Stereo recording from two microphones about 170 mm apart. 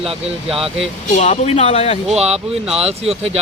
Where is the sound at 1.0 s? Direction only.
40° left (ahead or behind).